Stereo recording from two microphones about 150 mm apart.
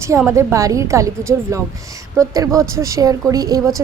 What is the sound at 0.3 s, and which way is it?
A woman's voice, 20° right (ahead or behind).